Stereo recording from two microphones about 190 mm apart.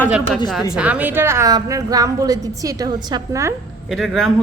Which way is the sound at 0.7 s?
5° right (ahead or behind).